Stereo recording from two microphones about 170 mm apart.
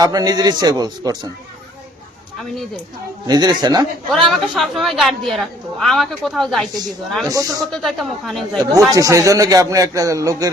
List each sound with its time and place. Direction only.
0.0 s speech: 20° right (ahead or behind)
3.2 s speech: 25° right (ahead or behind)
4.1 s a woman's voice: centre (ahead or behind)
7.3 s speech: 20° right (ahead or behind)
7.7 s a woman's voice: centre (ahead or behind)
8.9 s speech: 20° right (ahead or behind)